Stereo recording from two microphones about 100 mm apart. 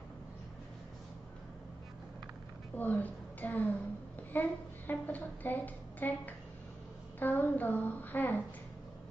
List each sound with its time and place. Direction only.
2.7 s a woman's voice: 15° left (ahead or behind)
4.3 s a sound: 20° left (ahead or behind)
7.2 s child singing: 20° left (ahead or behind)